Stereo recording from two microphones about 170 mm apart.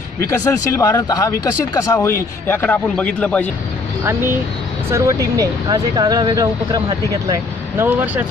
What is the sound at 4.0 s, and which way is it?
Speech, 15° right (ahead or behind).